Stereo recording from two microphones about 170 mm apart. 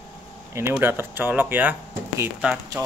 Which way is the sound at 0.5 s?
15° right (ahead or behind).